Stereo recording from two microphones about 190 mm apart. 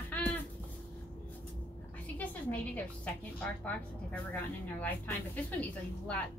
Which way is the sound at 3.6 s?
5° left (ahead or behind).